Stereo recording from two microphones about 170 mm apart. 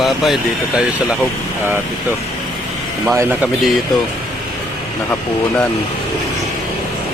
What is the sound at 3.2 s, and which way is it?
Speech, 10° right (ahead or behind).